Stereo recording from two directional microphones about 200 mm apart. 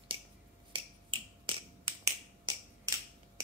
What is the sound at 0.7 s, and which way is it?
Finger snapping, 25° right (ahead or behind).